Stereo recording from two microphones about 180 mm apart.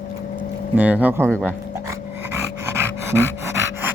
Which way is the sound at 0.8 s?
10° right (ahead or behind).